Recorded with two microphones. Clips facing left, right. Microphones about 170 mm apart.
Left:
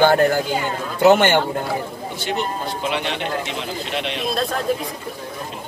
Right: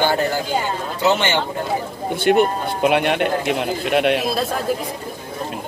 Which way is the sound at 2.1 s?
55° right (ahead or behind).